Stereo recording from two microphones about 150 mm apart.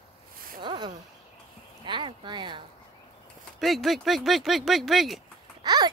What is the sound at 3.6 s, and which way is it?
Speech, centre (ahead or behind).